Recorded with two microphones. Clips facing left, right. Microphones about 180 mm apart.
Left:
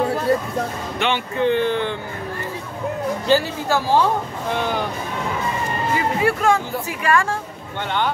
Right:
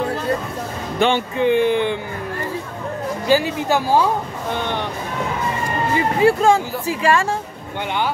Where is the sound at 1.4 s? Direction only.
10° right (ahead or behind).